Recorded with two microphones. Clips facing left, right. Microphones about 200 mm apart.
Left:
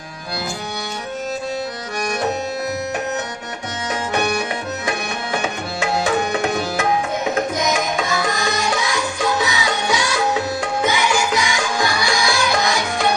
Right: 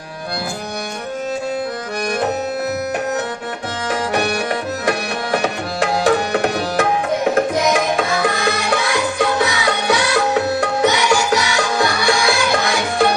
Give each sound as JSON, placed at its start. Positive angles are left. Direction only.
{"t": 6.1, "sound": "tabla", "side_deg": -60}
{"t": 7.3, "sound": "music", "side_deg": -60}